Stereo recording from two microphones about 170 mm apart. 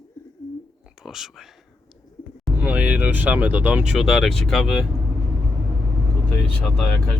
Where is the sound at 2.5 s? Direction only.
10° right (ahead or behind).